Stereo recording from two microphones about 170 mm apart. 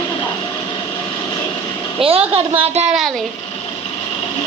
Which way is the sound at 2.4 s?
35° right (ahead or behind).